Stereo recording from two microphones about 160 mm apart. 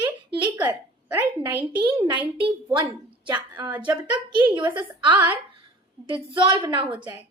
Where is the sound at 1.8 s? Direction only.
30° right (ahead or behind).